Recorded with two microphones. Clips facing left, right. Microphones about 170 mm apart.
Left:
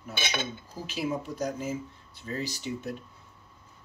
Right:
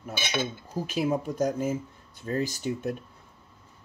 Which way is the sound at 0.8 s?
50° right (ahead or behind).